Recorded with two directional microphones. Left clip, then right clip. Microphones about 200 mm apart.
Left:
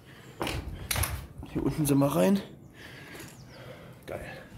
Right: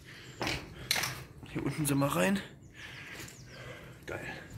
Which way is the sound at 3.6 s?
5° right (ahead or behind).